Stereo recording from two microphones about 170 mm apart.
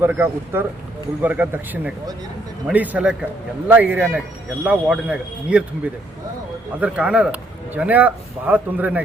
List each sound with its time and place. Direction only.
0.0 s speech: 15° right (ahead or behind)